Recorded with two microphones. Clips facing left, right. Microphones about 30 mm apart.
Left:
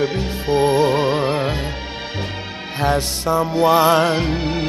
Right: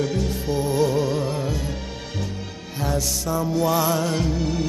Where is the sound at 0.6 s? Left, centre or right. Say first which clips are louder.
Left 6 dB; left.